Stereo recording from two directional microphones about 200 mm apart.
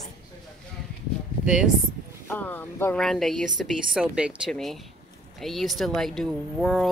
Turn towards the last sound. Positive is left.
turn(degrees=0)  # may be behind; listen again after turning